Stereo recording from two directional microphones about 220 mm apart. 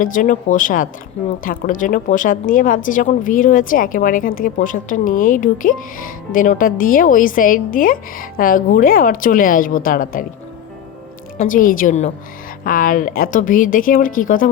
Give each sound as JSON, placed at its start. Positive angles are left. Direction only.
{"t": 0.0, "sound": "a woman's voice", "side_deg": 35}
{"t": 11.3, "sound": "a woman's voice", "side_deg": 40}